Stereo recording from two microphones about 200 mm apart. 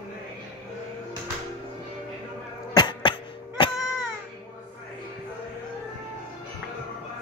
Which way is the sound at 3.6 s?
25° left (ahead or behind).